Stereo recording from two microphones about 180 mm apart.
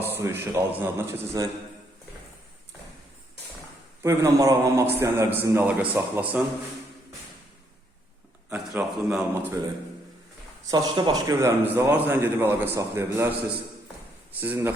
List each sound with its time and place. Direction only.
0.0 s a man's voice: 10° right (ahead or behind)
4.0 s a man's voice: 15° right (ahead or behind)
8.4 s a man's voice: 5° right (ahead or behind)
10.7 s a man's voice: 20° right (ahead or behind)
14.4 s a man's voice: 10° right (ahead or behind)